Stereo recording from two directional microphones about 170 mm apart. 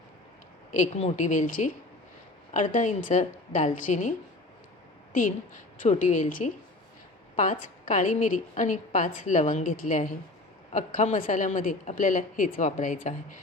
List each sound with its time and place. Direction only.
0.7 s a woman's voice: 45° left (ahead or behind)
5.1 s a woman's voice: 50° left (ahead or behind)